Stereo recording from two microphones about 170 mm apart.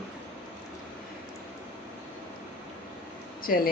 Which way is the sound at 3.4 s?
60° left (ahead or behind).